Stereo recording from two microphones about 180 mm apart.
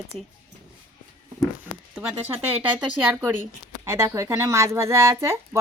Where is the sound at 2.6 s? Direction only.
10° right (ahead or behind).